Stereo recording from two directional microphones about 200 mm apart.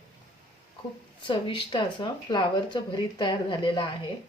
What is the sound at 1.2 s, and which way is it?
Speech, 25° left (ahead or behind).